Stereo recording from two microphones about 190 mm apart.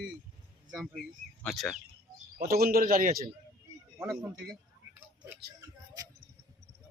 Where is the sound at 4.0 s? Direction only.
20° right (ahead or behind).